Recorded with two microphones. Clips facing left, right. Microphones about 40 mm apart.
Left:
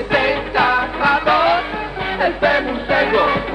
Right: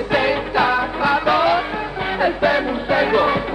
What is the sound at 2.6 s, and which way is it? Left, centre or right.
Music, left.